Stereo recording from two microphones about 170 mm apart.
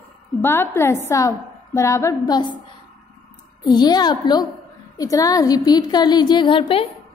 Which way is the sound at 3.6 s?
25° left (ahead or behind).